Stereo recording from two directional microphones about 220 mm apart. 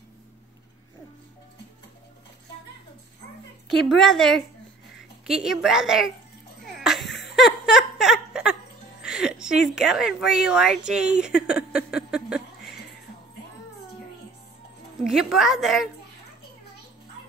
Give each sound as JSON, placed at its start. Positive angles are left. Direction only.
{"t": 3.7, "sound": "a woman's voice", "side_deg": 0}
{"t": 6.6, "sound": "music", "side_deg": 0}
{"t": 7.3, "sound": "a sound", "side_deg": 0}
{"t": 9.0, "sound": "a woman's voice", "side_deg": -5}
{"t": 15.0, "sound": "a woman's voice", "side_deg": 0}